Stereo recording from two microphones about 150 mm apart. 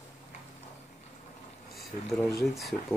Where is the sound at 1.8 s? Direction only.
Centre (ahead or behind).